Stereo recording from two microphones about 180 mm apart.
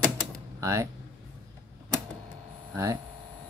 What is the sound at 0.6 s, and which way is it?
Speech, 15° right (ahead or behind).